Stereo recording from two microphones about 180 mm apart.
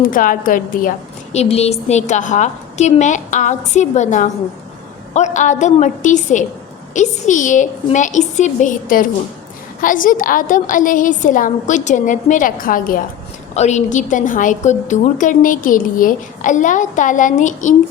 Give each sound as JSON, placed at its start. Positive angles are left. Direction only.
{"t": 0.0, "sound": "a woman's voice", "side_deg": 50}
{"t": 13.5, "sound": "a woman's voice", "side_deg": 40}